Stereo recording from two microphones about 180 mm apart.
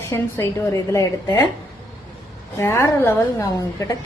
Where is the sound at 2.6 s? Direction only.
15° left (ahead or behind).